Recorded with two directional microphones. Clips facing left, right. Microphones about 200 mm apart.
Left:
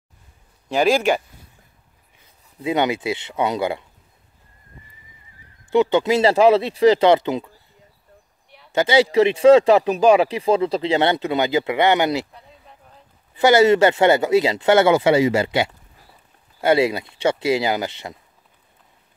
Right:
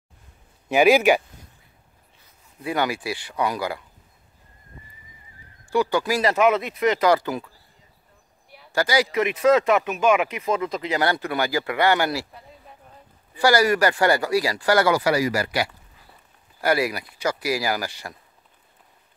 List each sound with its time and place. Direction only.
0.7 s speech: 5° right (ahead or behind)
2.6 s speech: 20° left (ahead or behind)
5.7 s speech: 20° left (ahead or behind)
8.7 s speech: 25° left (ahead or behind)
12.3 s a sound: centre (ahead or behind)
13.4 s speech: 25° left (ahead or behind)